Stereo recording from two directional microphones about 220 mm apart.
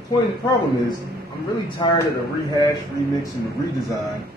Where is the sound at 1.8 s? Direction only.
20° left (ahead or behind).